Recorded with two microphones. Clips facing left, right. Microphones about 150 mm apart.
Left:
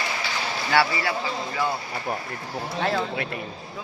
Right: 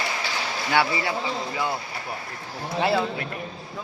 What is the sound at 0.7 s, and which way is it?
Speech, 20° right (ahead or behind).